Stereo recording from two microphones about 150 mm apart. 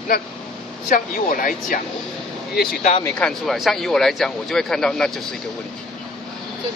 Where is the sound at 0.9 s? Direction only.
70° left (ahead or behind).